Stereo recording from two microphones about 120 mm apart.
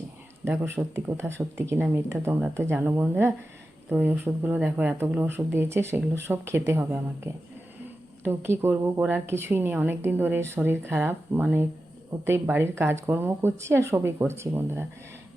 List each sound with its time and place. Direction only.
0.4 s a woman's voice: 20° right (ahead or behind)